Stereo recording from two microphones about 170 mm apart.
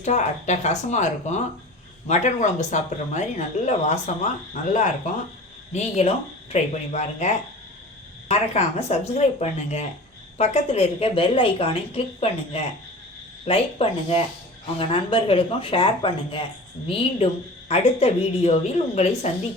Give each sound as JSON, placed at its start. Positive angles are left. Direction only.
{"t": 0.0, "sound": "speech", "side_deg": 45}